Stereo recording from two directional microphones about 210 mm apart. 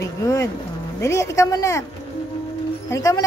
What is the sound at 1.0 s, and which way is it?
Speech, 15° left (ahead or behind).